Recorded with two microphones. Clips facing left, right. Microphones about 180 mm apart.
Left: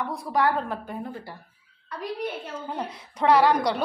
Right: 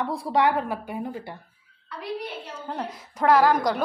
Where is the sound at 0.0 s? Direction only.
25° right (ahead or behind); by 1.2 s 10° right (ahead or behind).